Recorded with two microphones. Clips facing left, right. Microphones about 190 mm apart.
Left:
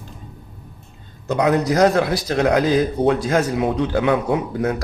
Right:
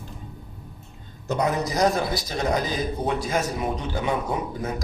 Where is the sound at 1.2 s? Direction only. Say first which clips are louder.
Left 6 dB; 70° left (ahead or behind).